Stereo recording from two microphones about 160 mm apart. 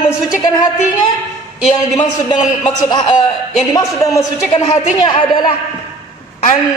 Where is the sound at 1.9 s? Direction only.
25° left (ahead or behind).